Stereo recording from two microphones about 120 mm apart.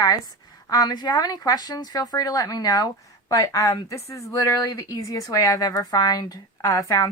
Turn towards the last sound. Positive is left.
turn(degrees=30)  # may be behind; listen again after turning